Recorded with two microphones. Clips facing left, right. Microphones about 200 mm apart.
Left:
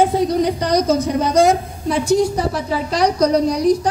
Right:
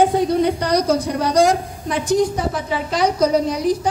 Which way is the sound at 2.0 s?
20° right (ahead or behind).